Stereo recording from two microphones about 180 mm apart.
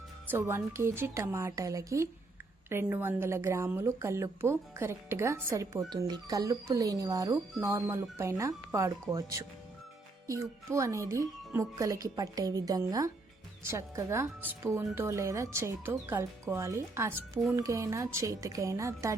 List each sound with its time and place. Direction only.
0.3 s speech: 15° right (ahead or behind)